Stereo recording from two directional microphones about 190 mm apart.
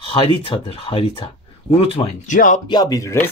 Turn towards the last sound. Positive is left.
turn(degrees=15)  # may be behind; listen again after turning